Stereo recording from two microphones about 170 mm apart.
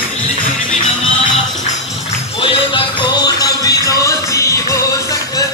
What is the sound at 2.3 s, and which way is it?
Music, 30° left (ahead or behind).